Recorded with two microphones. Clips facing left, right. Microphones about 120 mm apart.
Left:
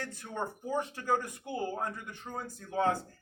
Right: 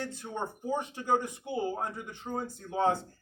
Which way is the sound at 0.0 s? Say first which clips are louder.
Right 1 dB; 20° right (ahead or behind).